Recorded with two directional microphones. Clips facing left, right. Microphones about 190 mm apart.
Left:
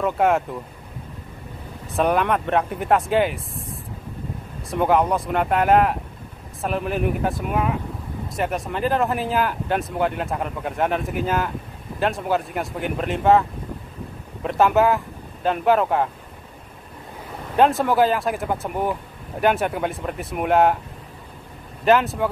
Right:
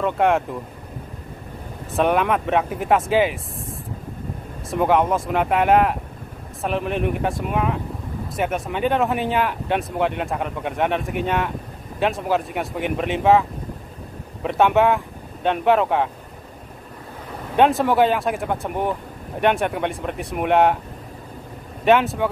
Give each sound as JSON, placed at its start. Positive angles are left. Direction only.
{"t": 0.0, "sound": "speech", "side_deg": 0}
{"t": 1.9, "sound": "speech", "side_deg": 0}
{"t": 4.6, "sound": "speech", "side_deg": 0}
{"t": 17.6, "sound": "speech", "side_deg": 0}
{"t": 21.8, "sound": "speech", "side_deg": 0}